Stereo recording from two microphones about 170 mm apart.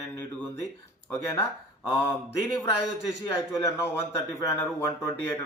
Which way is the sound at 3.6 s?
15° left (ahead or behind).